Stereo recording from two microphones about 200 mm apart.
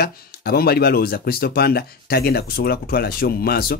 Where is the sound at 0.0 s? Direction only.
50° left (ahead or behind).